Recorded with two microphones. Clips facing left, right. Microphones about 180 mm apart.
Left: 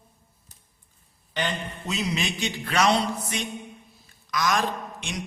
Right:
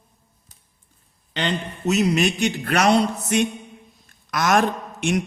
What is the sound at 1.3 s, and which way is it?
Speech, 65° right (ahead or behind).